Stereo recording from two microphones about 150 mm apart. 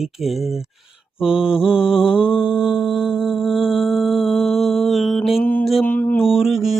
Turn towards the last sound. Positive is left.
turn(degrees=0)  # may be behind; listen again after turning